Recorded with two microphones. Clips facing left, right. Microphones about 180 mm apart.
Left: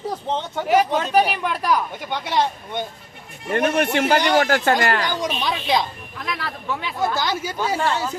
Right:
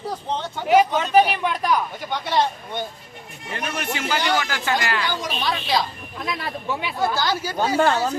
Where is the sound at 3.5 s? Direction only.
55° left (ahead or behind).